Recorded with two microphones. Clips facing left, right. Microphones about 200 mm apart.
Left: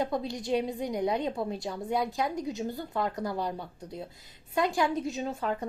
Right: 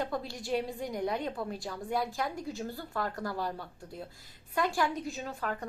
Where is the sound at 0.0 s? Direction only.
20° left (ahead or behind).